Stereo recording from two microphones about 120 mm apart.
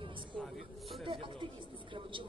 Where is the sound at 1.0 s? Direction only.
45° right (ahead or behind).